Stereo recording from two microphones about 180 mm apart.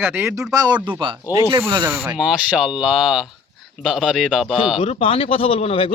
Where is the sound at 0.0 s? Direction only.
10° right (ahead or behind).